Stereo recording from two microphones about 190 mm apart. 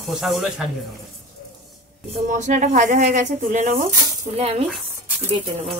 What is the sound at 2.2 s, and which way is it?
Speech, 40° right (ahead or behind).